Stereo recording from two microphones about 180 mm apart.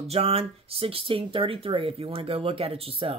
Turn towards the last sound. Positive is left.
turn(degrees=-30)  # may be behind; listen again after turning